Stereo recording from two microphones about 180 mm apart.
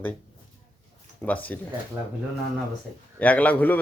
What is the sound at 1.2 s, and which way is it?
Speech, 10° left (ahead or behind).